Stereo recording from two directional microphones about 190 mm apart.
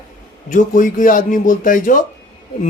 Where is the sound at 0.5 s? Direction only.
45° left (ahead or behind).